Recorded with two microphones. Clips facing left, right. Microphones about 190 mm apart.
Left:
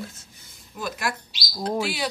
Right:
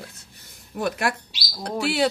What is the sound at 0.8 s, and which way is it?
Speech, 60° right (ahead or behind).